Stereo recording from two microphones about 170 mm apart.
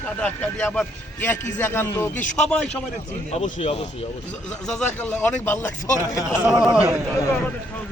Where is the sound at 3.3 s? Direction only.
40° left (ahead or behind).